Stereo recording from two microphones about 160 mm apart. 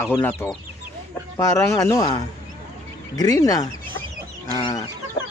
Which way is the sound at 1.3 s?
20° left (ahead or behind).